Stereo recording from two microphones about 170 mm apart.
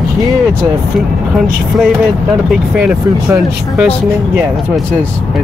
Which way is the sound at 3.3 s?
10° right (ahead or behind).